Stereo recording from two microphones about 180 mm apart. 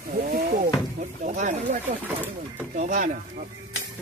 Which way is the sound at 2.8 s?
45° right (ahead or behind).